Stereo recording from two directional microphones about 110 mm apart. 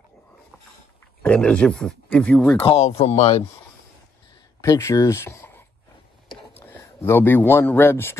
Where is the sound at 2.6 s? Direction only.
65° left (ahead or behind).